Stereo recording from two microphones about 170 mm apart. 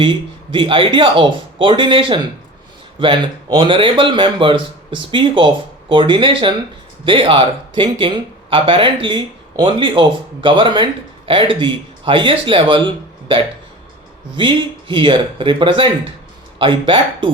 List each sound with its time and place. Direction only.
0.0 s speech: 30° right (ahead or behind)